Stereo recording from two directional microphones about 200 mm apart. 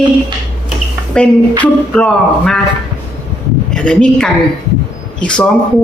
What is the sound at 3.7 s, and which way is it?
Speech, 5° left (ahead or behind).